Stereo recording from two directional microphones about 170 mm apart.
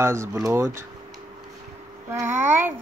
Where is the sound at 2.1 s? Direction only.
10° right (ahead or behind).